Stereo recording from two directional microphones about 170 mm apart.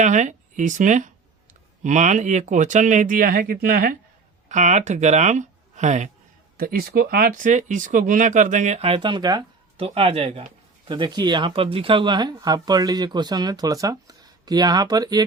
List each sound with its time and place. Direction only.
0.0 s speech: 45° right (ahead or behind)
4.4 s speech: 45° right (ahead or behind)
6.6 s speech: 60° right (ahead or behind)
8.8 s speech: 30° right (ahead or behind)